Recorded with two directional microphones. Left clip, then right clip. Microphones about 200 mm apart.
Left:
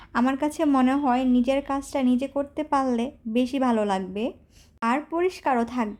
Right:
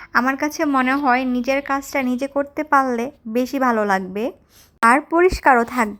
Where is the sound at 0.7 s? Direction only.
5° left (ahead or behind).